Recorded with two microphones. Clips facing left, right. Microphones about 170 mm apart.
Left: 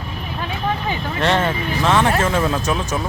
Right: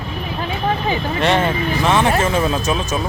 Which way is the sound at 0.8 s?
15° right (ahead or behind).